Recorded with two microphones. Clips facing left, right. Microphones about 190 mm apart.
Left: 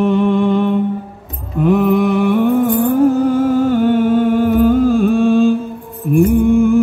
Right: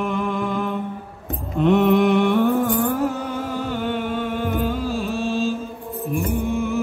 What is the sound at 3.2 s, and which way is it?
Music, 45° left (ahead or behind).